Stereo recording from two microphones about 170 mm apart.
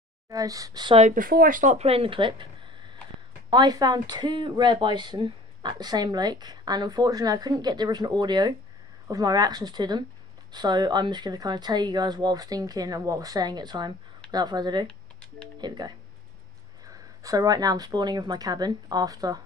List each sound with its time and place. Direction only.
0.3 s speech: 20° right (ahead or behind)
1.1 s speech: 55° right (ahead or behind); by 2.4 s 30° right (ahead or behind)
3.4 s speech: 25° right (ahead or behind)
14.9 s a sound: 5° left (ahead or behind)
15.6 s speech: 25° right (ahead or behind)